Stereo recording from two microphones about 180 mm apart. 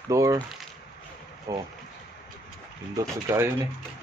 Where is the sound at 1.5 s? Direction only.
20° right (ahead or behind).